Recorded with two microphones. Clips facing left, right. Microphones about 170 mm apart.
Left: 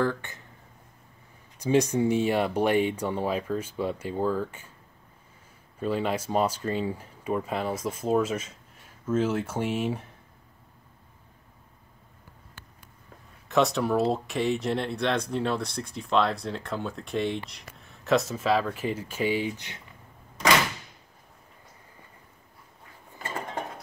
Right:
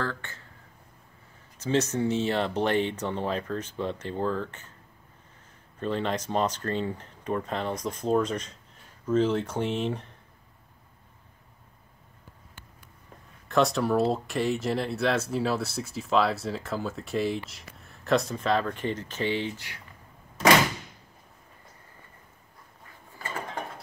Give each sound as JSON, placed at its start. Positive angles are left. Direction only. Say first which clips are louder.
{"t": 0.0, "sound": "speech", "louder": "left 6 dB", "side_deg": 15}
{"t": 1.6, "sound": "speech", "louder": "left 3 dB", "side_deg": 10}
{"t": 5.8, "sound": "speech", "louder": "left 1 dB", "side_deg": 10}
{"t": 13.5, "sound": "speech", "louder": "even", "side_deg": 0}